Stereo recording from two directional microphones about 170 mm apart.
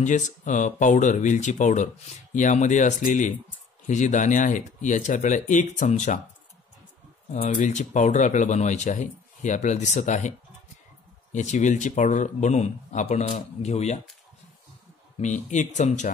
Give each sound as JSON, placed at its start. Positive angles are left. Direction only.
{"t": 0.0, "sound": "speech", "side_deg": 45}
{"t": 7.3, "sound": "speech", "side_deg": 50}
{"t": 11.3, "sound": "speech", "side_deg": 45}
{"t": 15.1, "sound": "speech", "side_deg": 45}